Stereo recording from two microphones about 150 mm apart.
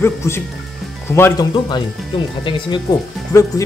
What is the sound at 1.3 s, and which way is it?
Speech, 30° left (ahead or behind).